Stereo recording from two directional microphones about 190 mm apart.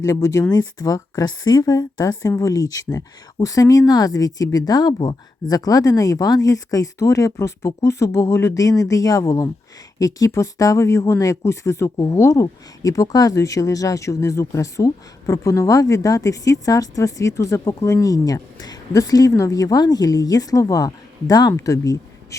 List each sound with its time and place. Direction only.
0.0 s a woman's voice: 15° left (ahead or behind)